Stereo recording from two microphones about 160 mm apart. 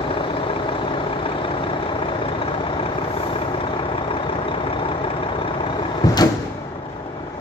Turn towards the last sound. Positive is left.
turn(degrees=25)  # may be behind; listen again after turning